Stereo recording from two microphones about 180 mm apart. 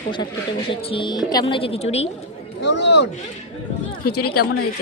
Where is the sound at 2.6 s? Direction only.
75° left (ahead or behind).